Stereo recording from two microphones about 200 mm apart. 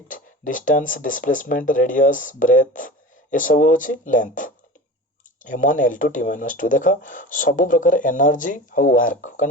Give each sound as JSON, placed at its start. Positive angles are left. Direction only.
{"t": 0.1, "sound": "speech", "side_deg": 40}